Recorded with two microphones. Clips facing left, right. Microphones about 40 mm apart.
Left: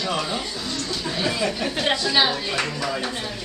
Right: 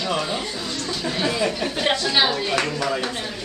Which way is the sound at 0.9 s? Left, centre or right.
Centre.